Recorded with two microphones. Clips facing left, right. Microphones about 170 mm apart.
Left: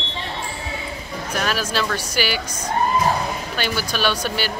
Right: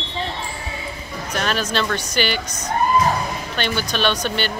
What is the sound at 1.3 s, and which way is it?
Speech, 5° left (ahead or behind).